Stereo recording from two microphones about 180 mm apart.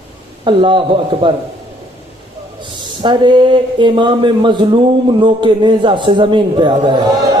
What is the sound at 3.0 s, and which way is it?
A man's voice, 25° right (ahead or behind).